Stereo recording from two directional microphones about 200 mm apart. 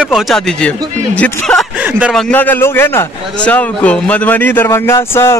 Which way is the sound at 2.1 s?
5° left (ahead or behind).